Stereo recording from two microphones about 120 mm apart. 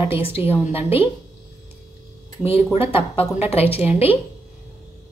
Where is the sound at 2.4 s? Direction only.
55° left (ahead or behind).